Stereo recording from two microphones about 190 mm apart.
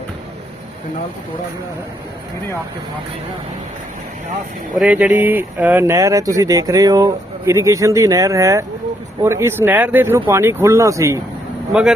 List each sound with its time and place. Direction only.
4.8 s speech: 10° right (ahead or behind)
11.7 s speech: 5° right (ahead or behind)